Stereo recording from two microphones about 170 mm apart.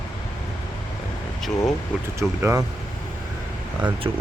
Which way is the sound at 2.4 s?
15° right (ahead or behind).